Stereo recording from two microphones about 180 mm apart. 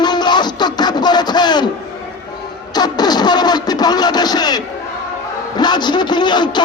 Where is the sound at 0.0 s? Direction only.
25° left (ahead or behind).